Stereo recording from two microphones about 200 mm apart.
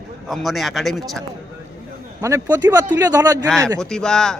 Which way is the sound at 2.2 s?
15° right (ahead or behind).